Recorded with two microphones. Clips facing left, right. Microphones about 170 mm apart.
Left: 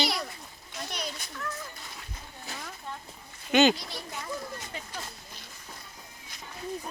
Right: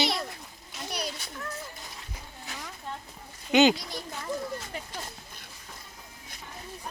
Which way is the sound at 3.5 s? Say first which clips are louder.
Right 1 dB; 15° right (ahead or behind).